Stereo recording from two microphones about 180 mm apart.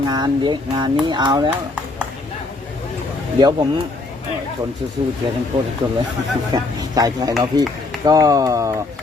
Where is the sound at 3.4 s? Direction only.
25° right (ahead or behind).